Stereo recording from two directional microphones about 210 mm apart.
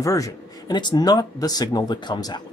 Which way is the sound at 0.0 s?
15° left (ahead or behind).